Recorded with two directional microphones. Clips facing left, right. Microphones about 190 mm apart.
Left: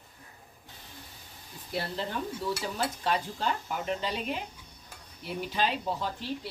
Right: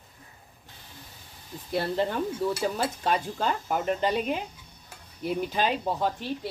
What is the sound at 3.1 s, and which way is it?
A woman's voice, 50° right (ahead or behind).